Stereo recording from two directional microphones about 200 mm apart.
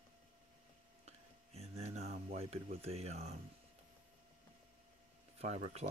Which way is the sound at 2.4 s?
30° right (ahead or behind).